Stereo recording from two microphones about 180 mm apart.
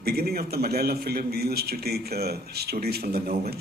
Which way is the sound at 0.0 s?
60° right (ahead or behind).